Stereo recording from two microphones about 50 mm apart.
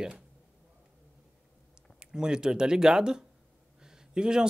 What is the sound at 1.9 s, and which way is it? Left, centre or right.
Speech, centre.